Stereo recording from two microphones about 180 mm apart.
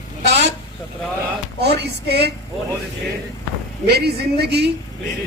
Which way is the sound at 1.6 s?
65° right (ahead or behind).